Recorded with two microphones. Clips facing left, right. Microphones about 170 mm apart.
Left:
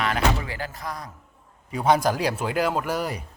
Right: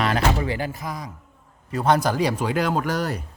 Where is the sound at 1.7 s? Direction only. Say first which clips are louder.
Even; 10° left (ahead or behind).